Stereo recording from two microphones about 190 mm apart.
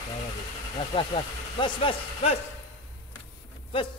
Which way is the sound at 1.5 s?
25° left (ahead or behind).